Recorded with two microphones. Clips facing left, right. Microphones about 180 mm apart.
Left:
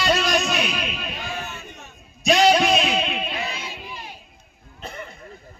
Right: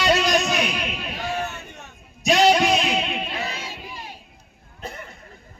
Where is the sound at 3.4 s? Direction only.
40° right (ahead or behind).